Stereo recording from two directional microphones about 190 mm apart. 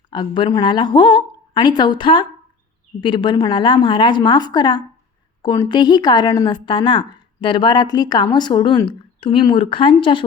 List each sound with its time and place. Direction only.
0.1 s a woman's voice: 25° left (ahead or behind)